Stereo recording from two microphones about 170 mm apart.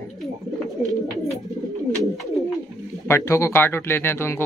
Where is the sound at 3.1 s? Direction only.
15° left (ahead or behind).